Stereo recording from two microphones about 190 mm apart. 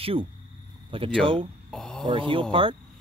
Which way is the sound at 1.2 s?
30° right (ahead or behind).